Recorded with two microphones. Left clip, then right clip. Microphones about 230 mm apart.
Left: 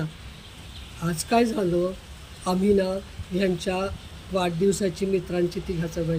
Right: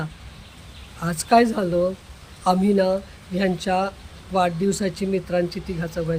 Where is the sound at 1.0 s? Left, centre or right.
Centre.